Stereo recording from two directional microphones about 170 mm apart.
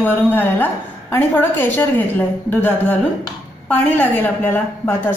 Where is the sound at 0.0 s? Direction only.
10° left (ahead or behind).